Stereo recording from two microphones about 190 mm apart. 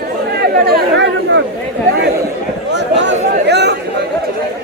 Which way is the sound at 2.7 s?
70° right (ahead or behind).